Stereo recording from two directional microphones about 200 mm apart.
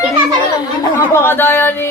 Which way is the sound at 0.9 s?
10° left (ahead or behind).